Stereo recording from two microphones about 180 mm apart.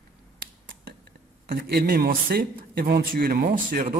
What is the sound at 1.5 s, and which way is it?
Speech, 55° right (ahead or behind).